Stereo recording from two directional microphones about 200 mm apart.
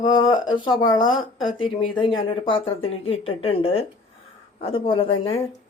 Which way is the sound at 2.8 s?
90° left.